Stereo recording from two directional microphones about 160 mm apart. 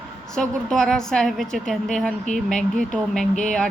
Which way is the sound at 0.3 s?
5° left (ahead or behind).